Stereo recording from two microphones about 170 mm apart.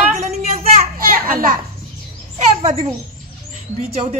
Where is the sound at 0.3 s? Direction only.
40° right (ahead or behind).